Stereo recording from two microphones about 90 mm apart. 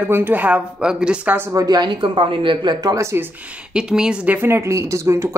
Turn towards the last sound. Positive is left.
turn(degrees=-30)  # may be behind; listen again after turning